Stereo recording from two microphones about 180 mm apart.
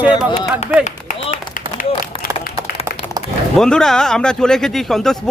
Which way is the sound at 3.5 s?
5° left (ahead or behind).